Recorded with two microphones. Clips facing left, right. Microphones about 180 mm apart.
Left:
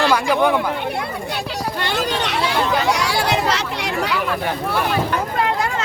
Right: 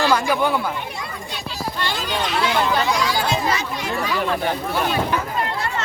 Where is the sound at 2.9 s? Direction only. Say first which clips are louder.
Left 2 dB; 70° left (ahead or behind).